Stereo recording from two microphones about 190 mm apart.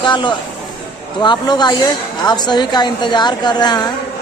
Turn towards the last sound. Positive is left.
turn(degrees=20)  # may be behind; listen again after turning